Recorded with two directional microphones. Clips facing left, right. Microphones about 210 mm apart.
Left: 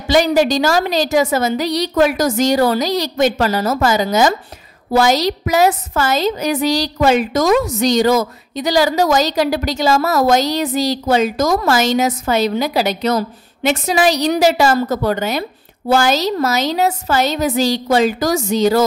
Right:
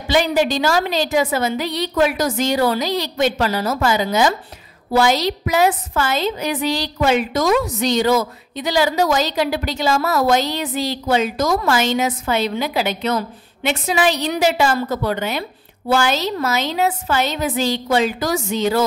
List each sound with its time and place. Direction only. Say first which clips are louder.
0.1 s a woman's voice: left 4 dB; 40° left (ahead or behind)